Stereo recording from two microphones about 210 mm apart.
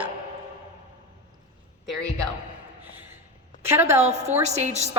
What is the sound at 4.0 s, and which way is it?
Speech, 30° right (ahead or behind).